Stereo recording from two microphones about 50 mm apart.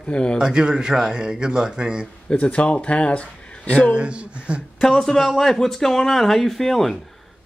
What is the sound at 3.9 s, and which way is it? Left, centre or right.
Speech, right.